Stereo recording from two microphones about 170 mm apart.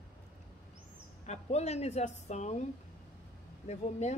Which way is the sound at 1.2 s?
40° left (ahead or behind).